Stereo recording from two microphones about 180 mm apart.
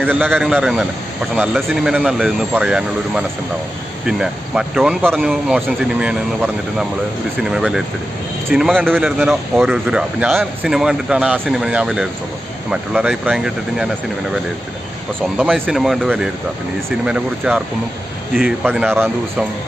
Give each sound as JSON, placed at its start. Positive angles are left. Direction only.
{"t": 0.0, "sound": "speech", "side_deg": -10}
{"t": 15.4, "sound": "speech", "side_deg": -10}